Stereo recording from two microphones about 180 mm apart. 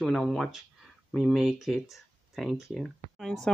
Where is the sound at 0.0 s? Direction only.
Centre (ahead or behind).